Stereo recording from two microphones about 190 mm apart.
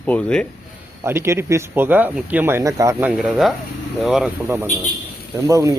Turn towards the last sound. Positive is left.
turn(degrees=-15)  # may be behind; listen again after turning